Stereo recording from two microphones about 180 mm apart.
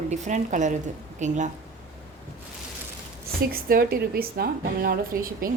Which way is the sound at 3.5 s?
55° right (ahead or behind).